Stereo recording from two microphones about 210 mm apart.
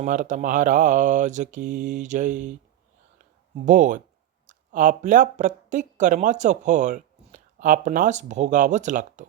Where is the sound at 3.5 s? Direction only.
35° right (ahead or behind).